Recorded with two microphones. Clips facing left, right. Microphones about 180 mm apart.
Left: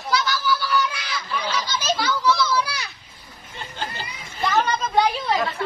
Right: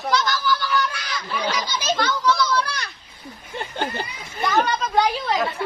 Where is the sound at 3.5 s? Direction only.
60° right (ahead or behind).